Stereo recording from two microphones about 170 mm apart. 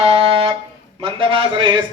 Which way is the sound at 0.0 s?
35° right (ahead or behind).